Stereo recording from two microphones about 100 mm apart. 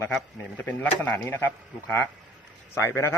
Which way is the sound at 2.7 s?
25° left (ahead or behind).